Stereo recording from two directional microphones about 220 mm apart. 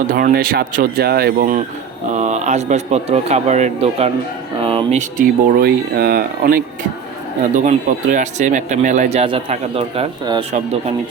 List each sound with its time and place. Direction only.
0.1 s speech: 40° right (ahead or behind); by 10.4 s 25° right (ahead or behind)